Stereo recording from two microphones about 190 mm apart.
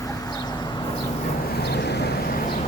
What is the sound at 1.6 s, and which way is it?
Vehicle, 60° left (ahead or behind).